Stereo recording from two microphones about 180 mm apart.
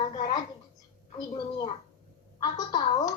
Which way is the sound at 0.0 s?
25° left (ahead or behind).